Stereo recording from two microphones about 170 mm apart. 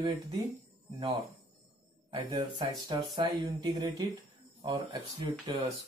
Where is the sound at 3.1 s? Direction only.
20° right (ahead or behind).